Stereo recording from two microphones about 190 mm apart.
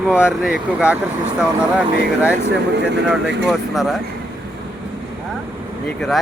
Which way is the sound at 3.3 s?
65° right (ahead or behind).